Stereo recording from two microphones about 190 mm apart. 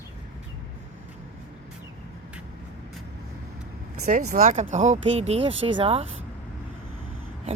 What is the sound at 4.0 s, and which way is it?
Speech, 40° right (ahead or behind).